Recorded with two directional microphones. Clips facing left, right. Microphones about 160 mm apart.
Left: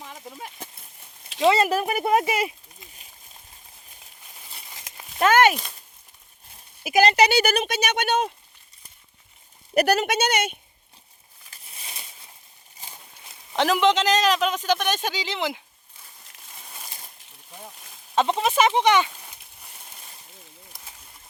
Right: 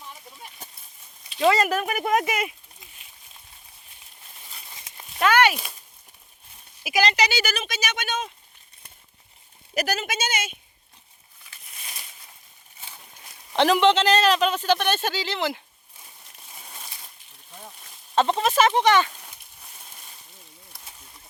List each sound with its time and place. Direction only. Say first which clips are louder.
0.0 s a sound: left 5 dB; 90° left
1.4 s speech: left 1 dB; 25° left (ahead or behind)
5.2 s speech: left 2 dB; 45° left (ahead or behind)
6.8 s speech: left 5 dB; 50° left (ahead or behind)
9.7 s speech: left 7 dB; 60° left (ahead or behind)
11.5 s a sound: left 1 dB; 25° left (ahead or behind)
13.5 s a man's voice: right 2 dB; 10° left (ahead or behind)
16.6 s a sound: even; centre (ahead or behind)
18.1 s speech: right 1 dB; 10° left (ahead or behind)